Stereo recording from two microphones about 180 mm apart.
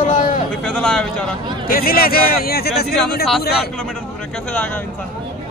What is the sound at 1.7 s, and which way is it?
Speech, 55° left (ahead or behind).